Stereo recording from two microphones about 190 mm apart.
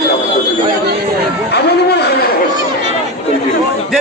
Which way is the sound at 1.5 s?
60° left (ahead or behind).